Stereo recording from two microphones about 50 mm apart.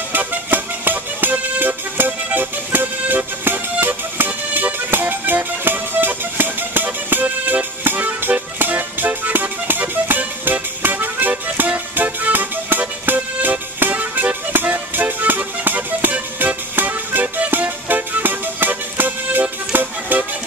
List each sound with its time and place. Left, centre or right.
0.1 s music: right
7.2 s music: right
7.8 s music: right